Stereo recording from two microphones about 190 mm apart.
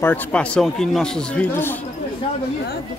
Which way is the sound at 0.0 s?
10° left (ahead or behind).